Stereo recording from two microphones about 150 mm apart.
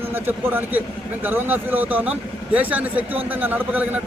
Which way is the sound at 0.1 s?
15° right (ahead or behind).